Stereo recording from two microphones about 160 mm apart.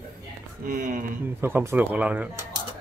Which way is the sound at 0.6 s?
55° right (ahead or behind).